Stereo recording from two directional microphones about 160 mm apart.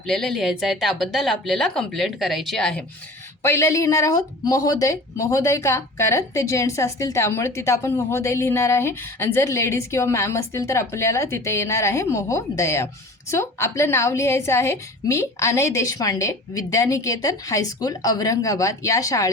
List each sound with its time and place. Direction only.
0.0 s speech: centre (ahead or behind)
3.4 s speech: 15° left (ahead or behind)